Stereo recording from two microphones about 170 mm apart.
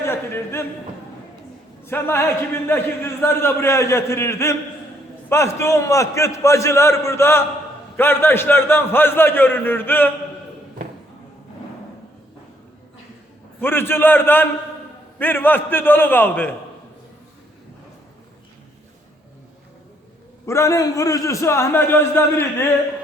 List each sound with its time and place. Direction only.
0.0 s speech: 15° left (ahead or behind)
1.9 s a man's voice: 15° left (ahead or behind)
13.6 s a man's voice: 15° left (ahead or behind)
20.5 s a man's voice: 15° left (ahead or behind)